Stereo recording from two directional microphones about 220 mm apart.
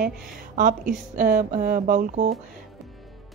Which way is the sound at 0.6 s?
35° right (ahead or behind).